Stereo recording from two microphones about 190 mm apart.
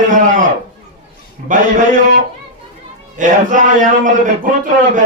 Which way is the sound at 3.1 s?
45° right (ahead or behind).